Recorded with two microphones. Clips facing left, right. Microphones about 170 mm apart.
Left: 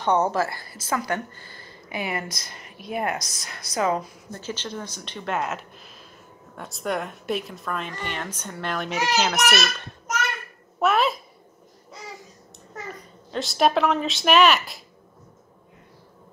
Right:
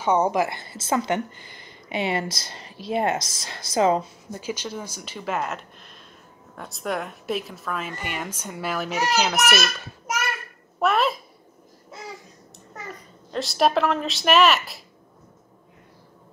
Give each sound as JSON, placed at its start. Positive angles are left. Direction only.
{"t": 0.0, "sound": "a woman's voice", "side_deg": -10}
{"t": 4.3, "sound": "speech", "side_deg": -10}
{"t": 11.9, "sound": "babbling", "side_deg": 0}
{"t": 12.8, "sound": "speech", "side_deg": 0}